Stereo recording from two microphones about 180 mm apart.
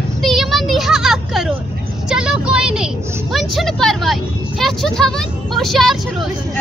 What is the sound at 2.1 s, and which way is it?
Vehicle, 5° right (ahead or behind).